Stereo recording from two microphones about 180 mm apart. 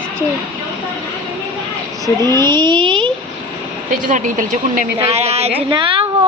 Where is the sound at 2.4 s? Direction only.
25° right (ahead or behind).